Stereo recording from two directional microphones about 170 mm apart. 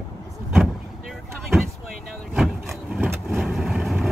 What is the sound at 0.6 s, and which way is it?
Vehicle, 5° right (ahead or behind).